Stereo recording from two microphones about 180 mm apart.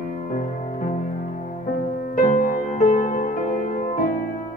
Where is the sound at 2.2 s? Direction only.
50° left (ahead or behind).